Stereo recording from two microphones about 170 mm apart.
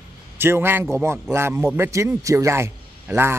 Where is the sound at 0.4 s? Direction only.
15° right (ahead or behind).